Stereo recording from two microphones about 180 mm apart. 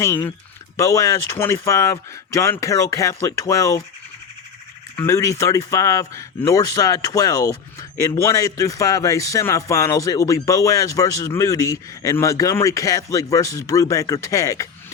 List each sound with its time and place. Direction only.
0.8 s speech: 15° left (ahead or behind)
4.9 s speech: 15° left (ahead or behind)